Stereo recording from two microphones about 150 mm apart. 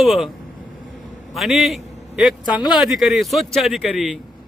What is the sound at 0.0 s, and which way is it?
Speech, centre (ahead or behind).